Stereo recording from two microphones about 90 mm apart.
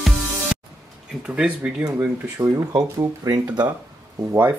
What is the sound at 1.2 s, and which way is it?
Speech, 15° right (ahead or behind).